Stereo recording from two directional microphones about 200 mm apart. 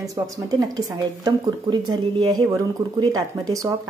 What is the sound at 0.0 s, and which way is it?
Speech, 15° right (ahead or behind).